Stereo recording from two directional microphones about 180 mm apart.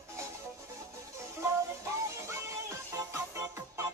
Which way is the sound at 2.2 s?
15° right (ahead or behind).